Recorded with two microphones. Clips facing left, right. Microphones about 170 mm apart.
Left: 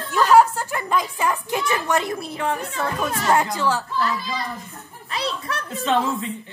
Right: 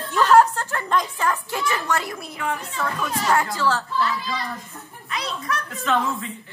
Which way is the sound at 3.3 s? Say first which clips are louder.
Left 1 dB; 20° left (ahead or behind).